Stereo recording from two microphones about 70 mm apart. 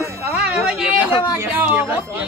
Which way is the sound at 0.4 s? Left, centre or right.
Centre.